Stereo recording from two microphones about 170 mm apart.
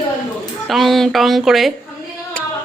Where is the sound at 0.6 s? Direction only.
Centre (ahead or behind).